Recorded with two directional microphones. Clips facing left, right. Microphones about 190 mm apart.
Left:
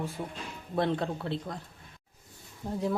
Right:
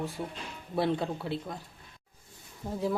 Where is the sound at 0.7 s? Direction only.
5° right (ahead or behind).